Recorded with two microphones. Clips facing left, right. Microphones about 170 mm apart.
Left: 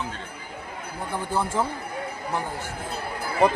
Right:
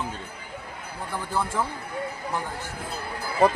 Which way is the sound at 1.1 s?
20° left (ahead or behind).